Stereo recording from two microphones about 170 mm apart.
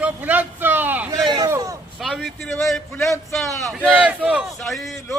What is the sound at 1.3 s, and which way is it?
Speech, 20° right (ahead or behind).